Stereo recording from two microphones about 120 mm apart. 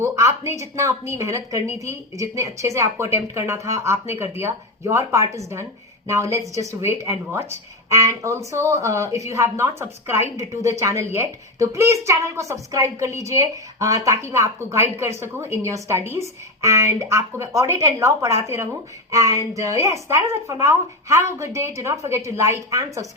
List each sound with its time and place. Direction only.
0.0 s a woman's voice: 25° right (ahead or behind)